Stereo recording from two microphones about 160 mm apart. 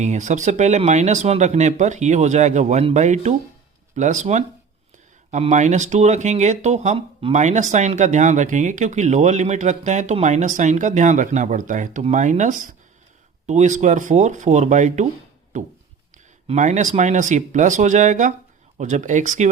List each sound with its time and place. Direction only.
0.0 s speech: 50° right (ahead or behind)